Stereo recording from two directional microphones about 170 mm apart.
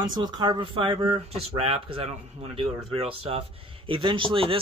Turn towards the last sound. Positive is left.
turn(degrees=-30)  # may be behind; listen again after turning